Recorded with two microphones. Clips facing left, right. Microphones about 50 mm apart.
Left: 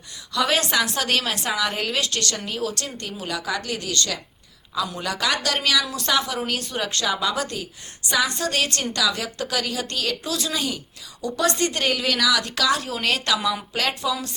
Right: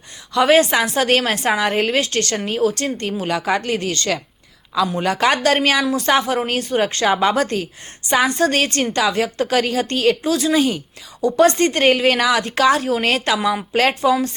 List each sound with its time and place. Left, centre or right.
0.3 s a woman's voice: right
2.6 s a woman's voice: right
2.8 s a woman's voice: right
8.1 s a woman's voice: right